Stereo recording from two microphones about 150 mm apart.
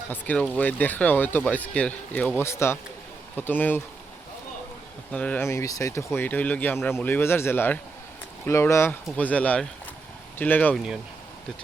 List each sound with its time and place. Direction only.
0.1 s speech: 10° left (ahead or behind)
5.1 s speech: 10° left (ahead or behind)